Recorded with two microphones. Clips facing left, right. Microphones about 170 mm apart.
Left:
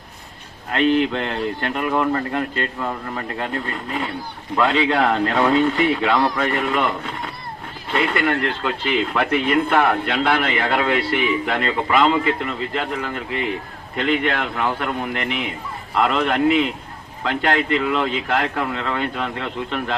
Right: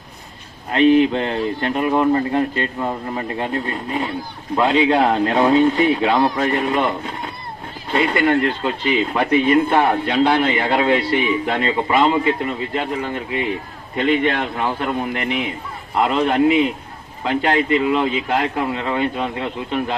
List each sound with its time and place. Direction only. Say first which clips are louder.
0.7 s a man's voice: right 4 dB; 20° right (ahead or behind)